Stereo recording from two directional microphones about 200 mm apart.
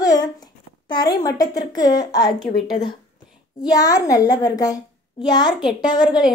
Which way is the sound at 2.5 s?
50° left (ahead or behind).